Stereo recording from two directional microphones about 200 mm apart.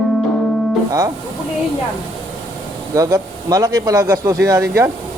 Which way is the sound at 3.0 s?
15° right (ahead or behind).